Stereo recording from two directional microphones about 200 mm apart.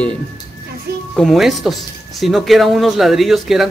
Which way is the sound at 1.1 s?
Centre (ahead or behind).